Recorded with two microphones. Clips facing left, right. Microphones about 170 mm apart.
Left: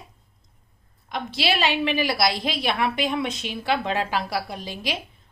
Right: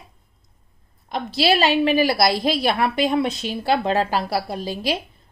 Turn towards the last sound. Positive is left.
turn(degrees=-35)  # may be behind; listen again after turning